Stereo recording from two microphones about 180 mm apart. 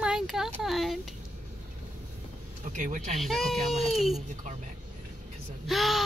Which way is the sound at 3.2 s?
Centre (ahead or behind).